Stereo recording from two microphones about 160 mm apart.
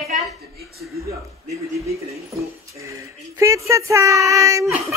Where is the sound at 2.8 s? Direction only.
20° right (ahead or behind).